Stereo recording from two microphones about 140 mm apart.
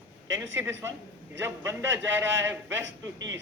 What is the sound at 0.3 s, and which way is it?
A man's voice, 20° right (ahead or behind).